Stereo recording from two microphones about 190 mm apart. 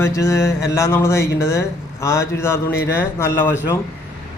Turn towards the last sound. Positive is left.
turn(degrees=15)  # may be behind; listen again after turning